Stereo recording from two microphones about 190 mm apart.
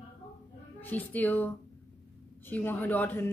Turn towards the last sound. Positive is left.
turn(degrees=10)  # may be behind; listen again after turning